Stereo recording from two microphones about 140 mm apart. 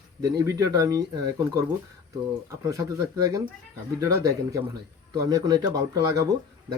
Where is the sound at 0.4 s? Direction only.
25° right (ahead or behind).